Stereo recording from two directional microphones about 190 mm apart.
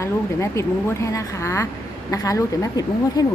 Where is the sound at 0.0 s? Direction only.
15° left (ahead or behind).